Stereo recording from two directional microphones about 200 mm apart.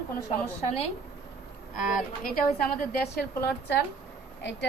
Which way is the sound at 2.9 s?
55° left (ahead or behind).